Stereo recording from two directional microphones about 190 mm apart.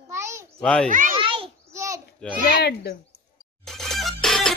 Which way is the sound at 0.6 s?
5° left (ahead or behind).